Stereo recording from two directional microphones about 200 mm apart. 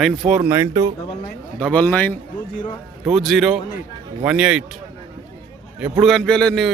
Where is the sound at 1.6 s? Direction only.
5° left (ahead or behind).